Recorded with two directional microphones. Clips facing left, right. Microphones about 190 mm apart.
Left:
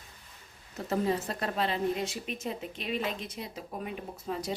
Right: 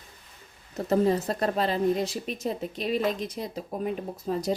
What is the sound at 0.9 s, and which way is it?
A woman's voice, 40° right (ahead or behind).